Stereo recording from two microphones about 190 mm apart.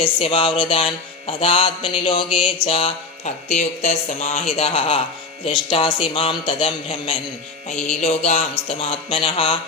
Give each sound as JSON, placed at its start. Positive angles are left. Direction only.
{"t": 0.0, "sound": "mantra", "side_deg": 30}
{"t": 8.0, "sound": "speech", "side_deg": 35}